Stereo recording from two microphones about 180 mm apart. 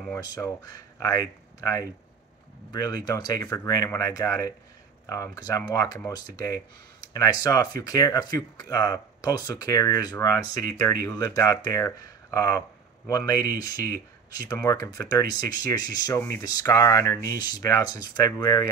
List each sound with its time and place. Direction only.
0.2 s speech: 20° left (ahead or behind)